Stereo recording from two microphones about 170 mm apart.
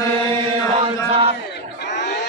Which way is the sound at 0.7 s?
35° right (ahead or behind).